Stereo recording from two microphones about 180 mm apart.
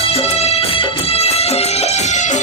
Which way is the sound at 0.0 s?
35° left (ahead or behind).